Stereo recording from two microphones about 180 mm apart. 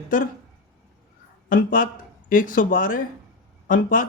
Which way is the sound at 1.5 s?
45° left (ahead or behind).